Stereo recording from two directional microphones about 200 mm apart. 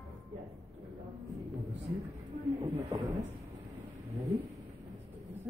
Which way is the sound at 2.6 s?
15° right (ahead or behind).